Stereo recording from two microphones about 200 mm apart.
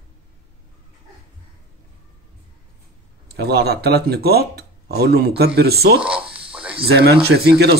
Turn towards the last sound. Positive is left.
turn(degrees=-55)  # may be behind; listen again after turning